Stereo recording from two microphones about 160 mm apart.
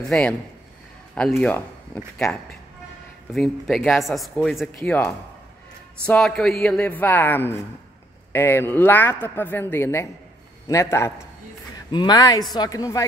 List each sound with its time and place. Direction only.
0.1 s speech: 10° left (ahead or behind)
3.3 s speech: centre (ahead or behind); by 11.1 s 15° left (ahead or behind)
11.9 s speech: 25° left (ahead or behind)